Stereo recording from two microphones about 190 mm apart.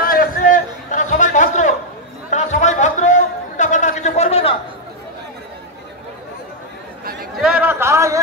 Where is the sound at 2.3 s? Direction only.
40° left (ahead or behind).